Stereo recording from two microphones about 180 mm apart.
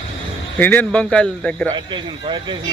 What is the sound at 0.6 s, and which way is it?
A man's voice, 10° left (ahead or behind).